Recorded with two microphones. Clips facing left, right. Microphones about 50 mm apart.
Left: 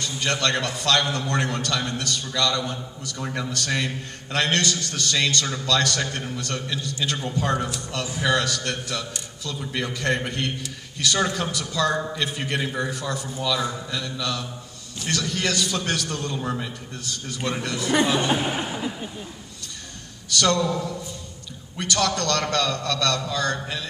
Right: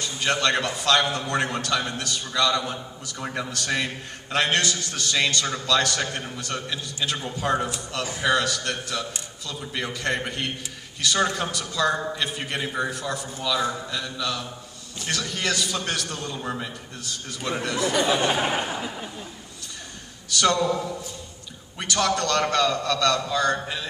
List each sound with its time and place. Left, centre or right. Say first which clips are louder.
0.0 s a man's voice: right 1 dB; centre
7.5 s a man's voice: right 1 dB; centre
8.2 s a man's voice: even; centre
18.5 s speech: right 1 dB; right
18.8 s speech: left 2 dB; centre
20.2 s a man's voice: even; centre